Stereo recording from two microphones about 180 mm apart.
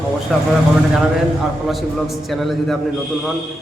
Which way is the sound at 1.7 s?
Centre (ahead or behind).